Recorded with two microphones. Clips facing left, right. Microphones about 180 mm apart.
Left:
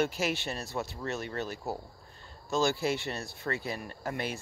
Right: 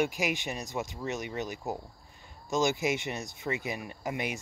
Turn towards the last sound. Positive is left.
turn(degrees=-15)  # may be behind; listen again after turning